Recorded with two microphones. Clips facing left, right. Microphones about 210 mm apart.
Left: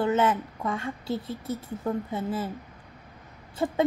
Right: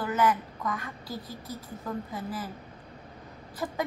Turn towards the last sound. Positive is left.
turn(degrees=25)  # may be behind; listen again after turning